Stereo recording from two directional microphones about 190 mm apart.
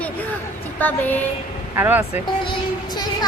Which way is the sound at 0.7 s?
10° left (ahead or behind).